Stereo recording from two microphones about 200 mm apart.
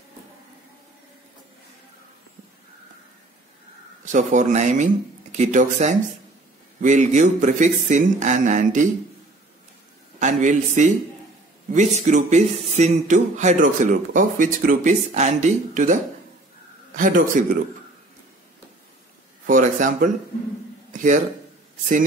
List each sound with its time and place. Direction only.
4.0 s speech: 40° right (ahead or behind)
10.1 s a man's voice: 40° right (ahead or behind)
19.4 s a man's voice: 40° right (ahead or behind)